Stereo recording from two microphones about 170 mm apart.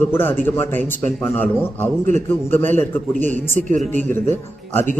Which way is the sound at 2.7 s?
10° left (ahead or behind).